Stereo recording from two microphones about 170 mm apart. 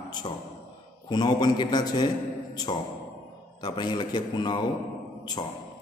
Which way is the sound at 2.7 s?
30° left (ahead or behind).